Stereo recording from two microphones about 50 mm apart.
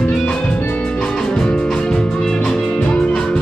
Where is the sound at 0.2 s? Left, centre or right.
Left.